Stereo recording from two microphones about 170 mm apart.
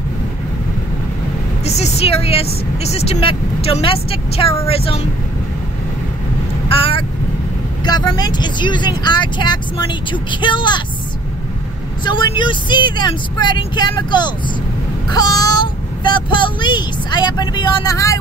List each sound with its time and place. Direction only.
1.7 s speech: 40° left (ahead or behind)
6.7 s vehicle: 30° left (ahead or behind)
7.8 s speech: 25° left (ahead or behind)
12.0 s speech: 25° left (ahead or behind)